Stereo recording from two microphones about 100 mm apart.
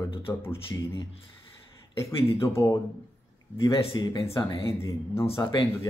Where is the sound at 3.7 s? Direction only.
70° left (ahead or behind).